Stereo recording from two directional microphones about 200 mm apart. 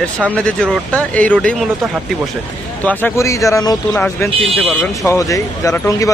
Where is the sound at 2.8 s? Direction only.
10° left (ahead or behind).